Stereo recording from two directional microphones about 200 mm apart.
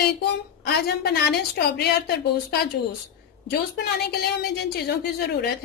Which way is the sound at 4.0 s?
55° left (ahead or behind).